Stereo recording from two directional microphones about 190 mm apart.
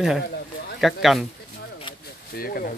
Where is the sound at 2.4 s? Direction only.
50° left (ahead or behind).